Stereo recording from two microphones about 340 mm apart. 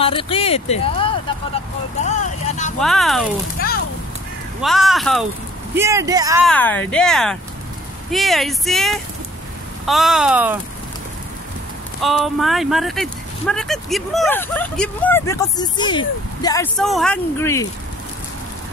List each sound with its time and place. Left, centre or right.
0.0 s speech: centre
2.8 s speech: centre
3.5 s speech: left
4.6 s speech: centre
6.4 s speech: centre
12.0 s speech: centre